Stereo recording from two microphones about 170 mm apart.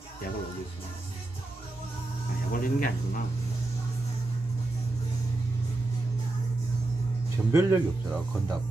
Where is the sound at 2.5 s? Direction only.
55° left (ahead or behind).